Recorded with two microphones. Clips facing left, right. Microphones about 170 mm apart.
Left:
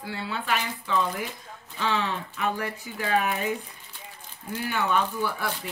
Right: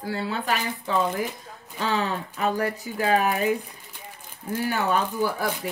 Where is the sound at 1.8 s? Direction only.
40° right (ahead or behind).